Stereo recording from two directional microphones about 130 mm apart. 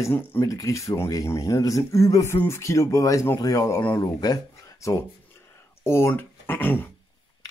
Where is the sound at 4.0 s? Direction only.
30° left (ahead or behind); by 6.9 s 15° left (ahead or behind).